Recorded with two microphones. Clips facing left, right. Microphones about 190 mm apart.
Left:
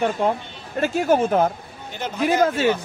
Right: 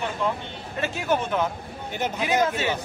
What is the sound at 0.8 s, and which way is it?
Speech, 45° left (ahead or behind).